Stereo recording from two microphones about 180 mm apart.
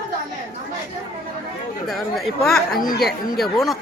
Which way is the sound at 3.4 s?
Centre (ahead or behind).